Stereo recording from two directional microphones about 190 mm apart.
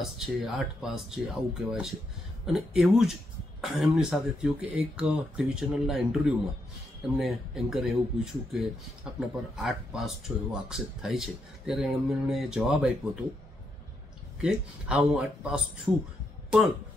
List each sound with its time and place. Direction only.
0.0 s speech: centre (ahead or behind)
14.4 s speech: 5° right (ahead or behind)